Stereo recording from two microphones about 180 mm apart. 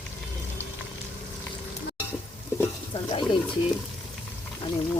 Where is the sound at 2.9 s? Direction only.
30° left (ahead or behind).